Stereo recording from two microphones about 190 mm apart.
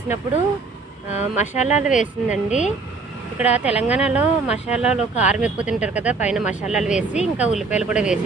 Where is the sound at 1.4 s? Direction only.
40° left (ahead or behind).